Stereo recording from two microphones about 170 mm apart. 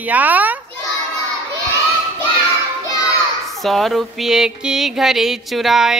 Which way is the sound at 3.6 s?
Centre (ahead or behind).